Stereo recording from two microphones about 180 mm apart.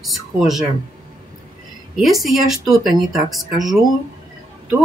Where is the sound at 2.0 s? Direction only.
Centre (ahead or behind).